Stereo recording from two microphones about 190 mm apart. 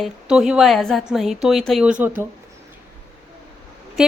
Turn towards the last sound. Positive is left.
turn(degrees=0)  # may be behind; listen again after turning